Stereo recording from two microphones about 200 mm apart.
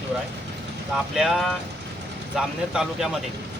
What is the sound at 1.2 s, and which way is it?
Speech, centre (ahead or behind).